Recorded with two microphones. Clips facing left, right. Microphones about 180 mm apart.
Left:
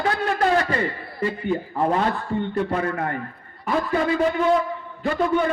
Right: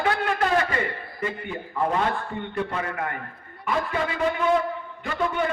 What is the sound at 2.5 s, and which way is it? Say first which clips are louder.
Speech: left 2 dB; 35° left (ahead or behind).